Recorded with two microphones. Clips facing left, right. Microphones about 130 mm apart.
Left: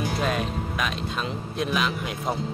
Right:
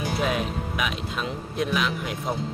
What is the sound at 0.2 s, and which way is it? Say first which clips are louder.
Speech: even; 5° right (ahead or behind).